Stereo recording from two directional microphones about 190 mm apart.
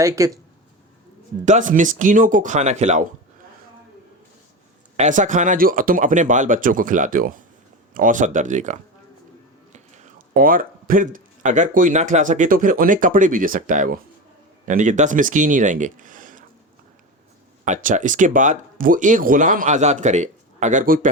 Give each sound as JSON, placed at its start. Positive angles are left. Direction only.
{"t": 0.0, "sound": "speech", "side_deg": -15}
{"t": 1.5, "sound": "speech", "side_deg": -40}
{"t": 4.9, "sound": "speech", "side_deg": -40}
{"t": 17.7, "sound": "speech", "side_deg": -40}